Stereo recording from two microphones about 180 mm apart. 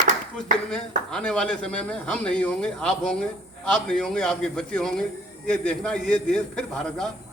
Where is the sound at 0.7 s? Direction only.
5° left (ahead or behind).